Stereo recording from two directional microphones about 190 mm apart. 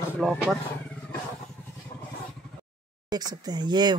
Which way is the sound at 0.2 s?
Centre (ahead or behind).